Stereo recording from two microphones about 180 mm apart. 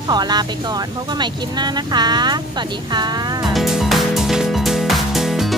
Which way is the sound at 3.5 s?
Centre (ahead or behind).